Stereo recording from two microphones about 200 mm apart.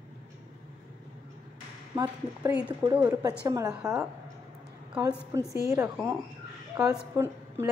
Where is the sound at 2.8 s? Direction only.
15° right (ahead or behind).